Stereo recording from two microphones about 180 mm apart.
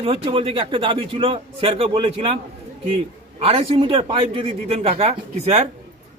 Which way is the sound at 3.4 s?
30° right (ahead or behind).